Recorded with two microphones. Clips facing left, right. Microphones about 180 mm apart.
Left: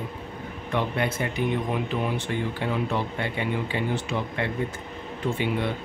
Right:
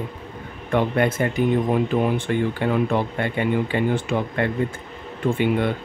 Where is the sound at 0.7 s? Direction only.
50° right (ahead or behind).